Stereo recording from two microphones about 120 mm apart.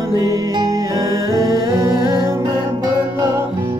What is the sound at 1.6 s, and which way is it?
Music, 30° right (ahead or behind).